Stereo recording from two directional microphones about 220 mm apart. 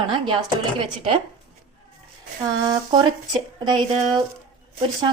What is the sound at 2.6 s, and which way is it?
Speech, 20° right (ahead or behind).